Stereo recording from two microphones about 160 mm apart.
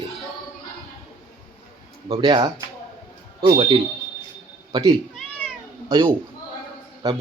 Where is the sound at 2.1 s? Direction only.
30° right (ahead or behind).